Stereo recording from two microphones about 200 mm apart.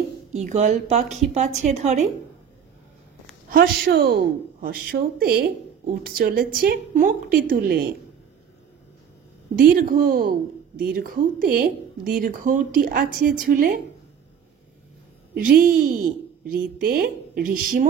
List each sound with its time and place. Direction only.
0.3 s a woman's voice: 35° right (ahead or behind)
3.5 s speech: 50° right (ahead or behind)
9.6 s speech: 45° right (ahead or behind)
15.3 s speech: 45° right (ahead or behind)